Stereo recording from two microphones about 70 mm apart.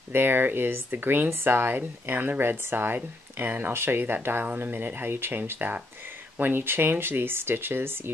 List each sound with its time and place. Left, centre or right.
0.1 s speech: right